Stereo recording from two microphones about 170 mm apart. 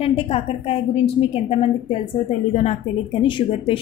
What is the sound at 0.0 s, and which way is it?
A woman's voice, 35° left (ahead or behind).